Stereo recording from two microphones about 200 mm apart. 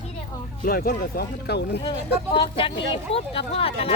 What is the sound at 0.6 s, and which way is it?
Speech, 50° left (ahead or behind).